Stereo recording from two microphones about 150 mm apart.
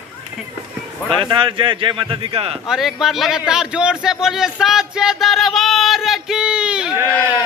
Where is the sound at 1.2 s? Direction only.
35° right (ahead or behind).